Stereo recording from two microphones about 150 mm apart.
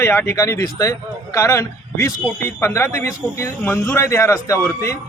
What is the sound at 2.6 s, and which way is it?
Speech, 20° left (ahead or behind).